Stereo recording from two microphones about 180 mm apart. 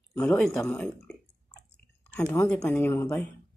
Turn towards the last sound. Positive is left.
turn(degrees=15)  # may be behind; listen again after turning